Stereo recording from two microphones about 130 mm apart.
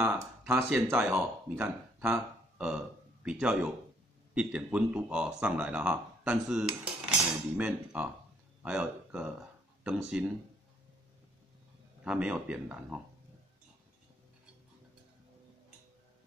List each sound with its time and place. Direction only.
0.0 s speech: 15° right (ahead or behind)
3.3 s speech: 10° right (ahead or behind)
7.1 s cutlery: 10° right (ahead or behind)
8.6 s speech: 10° right (ahead or behind)
12.0 s speech: 5° right (ahead or behind)